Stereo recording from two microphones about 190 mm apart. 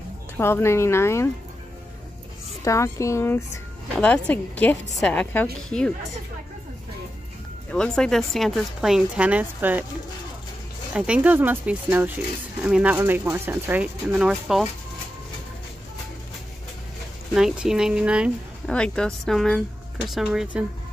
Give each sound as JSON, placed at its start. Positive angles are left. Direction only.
{"t": 0.4, "sound": "a woman's voice", "side_deg": 15}
{"t": 2.6, "sound": "a woman's voice", "side_deg": 15}
{"t": 7.7, "sound": "a woman's voice", "side_deg": 5}
{"t": 10.9, "sound": "speech", "side_deg": -5}
{"t": 17.3, "sound": "a woman's voice", "side_deg": -5}